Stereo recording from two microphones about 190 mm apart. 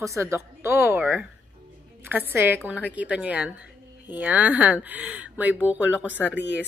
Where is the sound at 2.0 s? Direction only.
10° right (ahead or behind).